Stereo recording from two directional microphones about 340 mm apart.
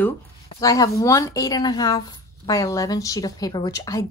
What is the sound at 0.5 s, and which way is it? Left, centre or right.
A woman's voice, centre.